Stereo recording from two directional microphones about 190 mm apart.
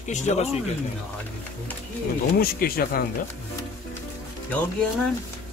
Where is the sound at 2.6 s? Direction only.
50° left (ahead or behind).